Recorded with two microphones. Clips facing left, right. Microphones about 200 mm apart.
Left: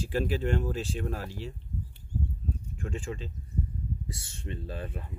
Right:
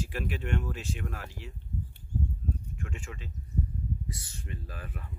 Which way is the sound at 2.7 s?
30° left (ahead or behind).